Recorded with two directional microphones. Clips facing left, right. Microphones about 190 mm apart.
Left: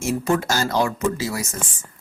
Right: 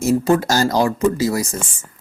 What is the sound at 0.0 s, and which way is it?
Speech, 40° right (ahead or behind).